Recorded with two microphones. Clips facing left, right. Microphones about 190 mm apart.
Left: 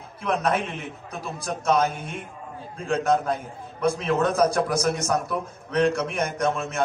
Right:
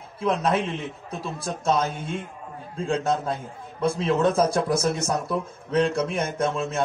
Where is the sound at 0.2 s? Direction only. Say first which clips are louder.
Right 1 dB; 25° right (ahead or behind).